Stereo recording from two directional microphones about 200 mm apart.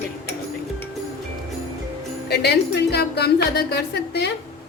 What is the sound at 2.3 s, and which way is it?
A woman's voice, 55° left (ahead or behind).